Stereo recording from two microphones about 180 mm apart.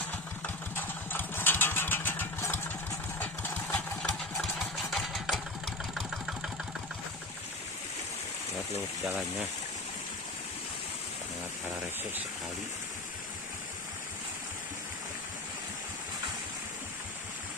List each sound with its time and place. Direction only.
0.4 s vehicle: 10° left (ahead or behind)
3.2 s engine: 10° left (ahead or behind)
9.0 s speech: 5° right (ahead or behind)